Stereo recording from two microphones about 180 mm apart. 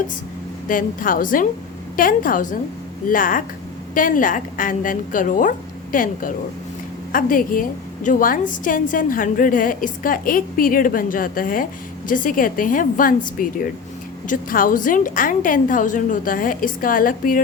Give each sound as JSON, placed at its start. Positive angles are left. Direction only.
{"t": 0.7, "sound": "a woman's voice", "side_deg": 50}